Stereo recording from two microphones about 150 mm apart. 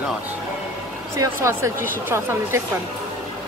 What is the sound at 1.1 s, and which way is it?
Speech, 20° right (ahead or behind).